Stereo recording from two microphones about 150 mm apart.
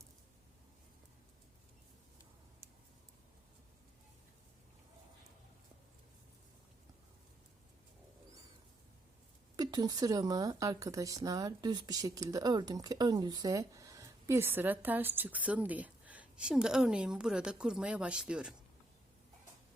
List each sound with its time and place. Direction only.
9.6 s speech: 25° right (ahead or behind); by 18.5 s 5° right (ahead or behind)